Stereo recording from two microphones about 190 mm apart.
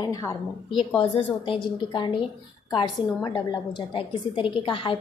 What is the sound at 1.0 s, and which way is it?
A woman's voice, 30° left (ahead or behind).